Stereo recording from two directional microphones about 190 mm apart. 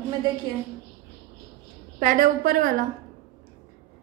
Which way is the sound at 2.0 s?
45° right (ahead or behind).